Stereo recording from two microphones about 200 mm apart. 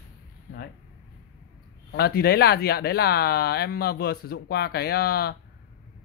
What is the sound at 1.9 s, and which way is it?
Speech, 50° left (ahead or behind).